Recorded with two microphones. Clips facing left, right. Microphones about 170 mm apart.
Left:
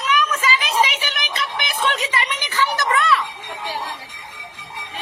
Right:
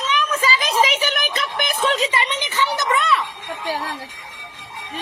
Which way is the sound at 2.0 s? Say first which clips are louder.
Right 3 dB; 25° right (ahead or behind).